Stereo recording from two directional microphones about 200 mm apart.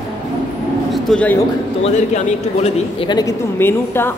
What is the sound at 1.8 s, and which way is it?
Speech, 35° left (ahead or behind).